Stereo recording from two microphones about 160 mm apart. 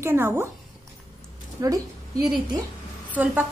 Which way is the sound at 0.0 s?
15° right (ahead or behind).